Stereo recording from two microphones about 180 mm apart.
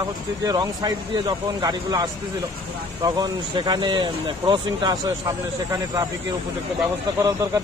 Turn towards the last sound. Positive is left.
turn(degrees=-20)  # may be behind; listen again after turning